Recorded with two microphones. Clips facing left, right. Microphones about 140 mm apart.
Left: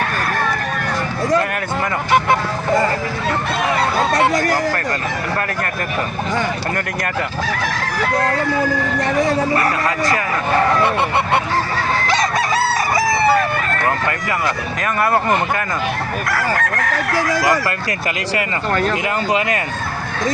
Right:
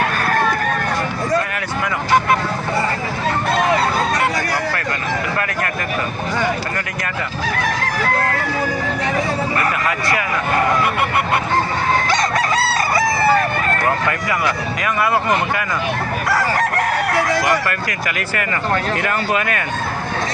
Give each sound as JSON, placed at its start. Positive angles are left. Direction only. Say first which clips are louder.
{"t": 4.4, "sound": "a sound", "louder": "left 4 dB", "side_deg": 45}
{"t": 16.3, "sound": "chicken", "louder": "right 3 dB", "side_deg": -15}
{"t": 19.0, "sound": "speech", "louder": "left 1 dB", "side_deg": 20}